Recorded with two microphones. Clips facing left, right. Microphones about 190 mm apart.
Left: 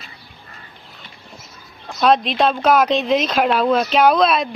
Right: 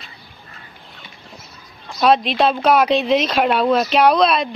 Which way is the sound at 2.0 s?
Centre (ahead or behind).